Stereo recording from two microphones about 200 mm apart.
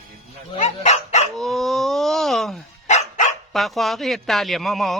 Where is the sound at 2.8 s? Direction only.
35° left (ahead or behind).